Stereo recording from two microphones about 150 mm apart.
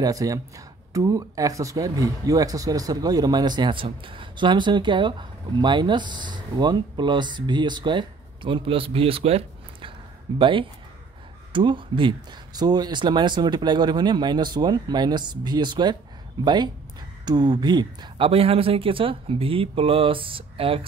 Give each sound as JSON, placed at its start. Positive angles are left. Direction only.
{"t": 0.0, "sound": "speech", "side_deg": -25}